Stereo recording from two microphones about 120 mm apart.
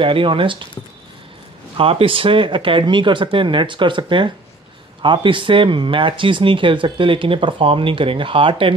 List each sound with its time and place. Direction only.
0.0 s speech: 45° right (ahead or behind)
1.8 s speech: 50° right (ahead or behind)